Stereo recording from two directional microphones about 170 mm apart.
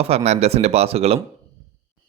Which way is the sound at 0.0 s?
35° right (ahead or behind).